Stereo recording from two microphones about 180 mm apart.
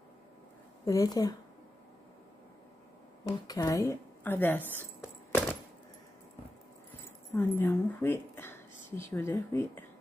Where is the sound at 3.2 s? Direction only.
20° left (ahead or behind).